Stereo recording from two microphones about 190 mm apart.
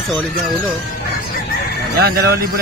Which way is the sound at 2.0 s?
55° right (ahead or behind).